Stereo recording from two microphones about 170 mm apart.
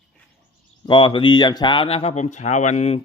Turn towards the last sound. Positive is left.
turn(degrees=40)  # may be behind; listen again after turning